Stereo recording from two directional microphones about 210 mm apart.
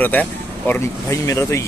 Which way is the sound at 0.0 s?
10° left (ahead or behind).